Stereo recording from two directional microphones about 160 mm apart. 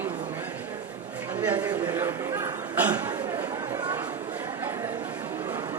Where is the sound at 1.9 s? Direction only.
15° right (ahead or behind).